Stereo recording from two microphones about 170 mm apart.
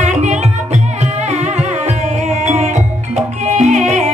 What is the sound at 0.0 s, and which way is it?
Music, 45° right (ahead or behind).